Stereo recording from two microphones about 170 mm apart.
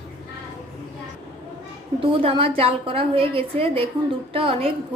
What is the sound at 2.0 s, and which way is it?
A woman's voice, 35° right (ahead or behind).